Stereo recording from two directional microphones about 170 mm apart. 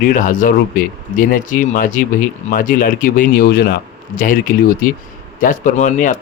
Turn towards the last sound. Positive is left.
turn(degrees=45)  # may be behind; listen again after turning